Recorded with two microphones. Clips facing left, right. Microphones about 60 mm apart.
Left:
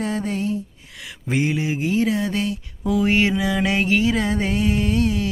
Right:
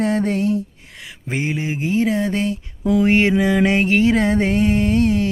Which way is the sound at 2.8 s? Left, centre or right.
Right.